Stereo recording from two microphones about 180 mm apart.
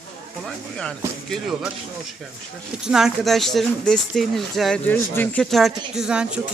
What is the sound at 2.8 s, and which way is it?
Speech, 5° right (ahead or behind).